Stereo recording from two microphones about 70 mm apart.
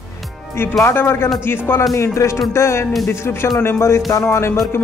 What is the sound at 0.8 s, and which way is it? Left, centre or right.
Speech, left.